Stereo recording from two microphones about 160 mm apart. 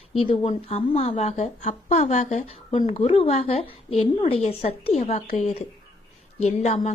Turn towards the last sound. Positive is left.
turn(degrees=45)  # may be behind; listen again after turning